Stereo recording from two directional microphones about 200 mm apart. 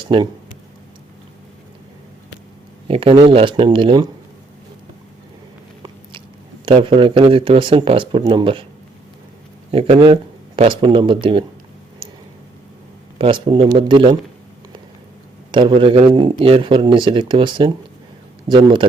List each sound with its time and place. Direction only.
0.1 s speech: 25° right (ahead or behind)
2.8 s speech: 25° right (ahead or behind)
6.7 s speech: 25° right (ahead or behind)
9.7 s speech: 25° right (ahead or behind)
13.1 s speech: 25° right (ahead or behind)
15.5 s speech: 25° right (ahead or behind)